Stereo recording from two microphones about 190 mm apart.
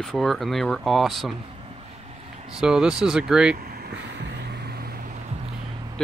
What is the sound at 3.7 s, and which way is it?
Vehicle, 60° right (ahead or behind).